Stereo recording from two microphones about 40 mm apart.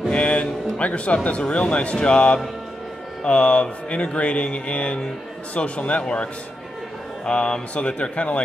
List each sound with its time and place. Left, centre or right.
0.1 s speech: left
7.2 s speech: left